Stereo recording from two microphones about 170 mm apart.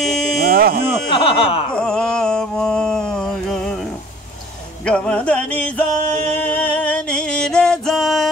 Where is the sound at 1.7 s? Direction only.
5° left (ahead or behind).